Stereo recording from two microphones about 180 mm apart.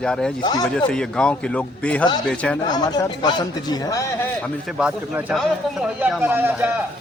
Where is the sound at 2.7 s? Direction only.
20° left (ahead or behind).